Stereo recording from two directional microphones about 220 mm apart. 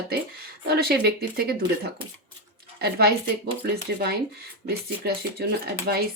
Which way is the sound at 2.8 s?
45° right (ahead or behind).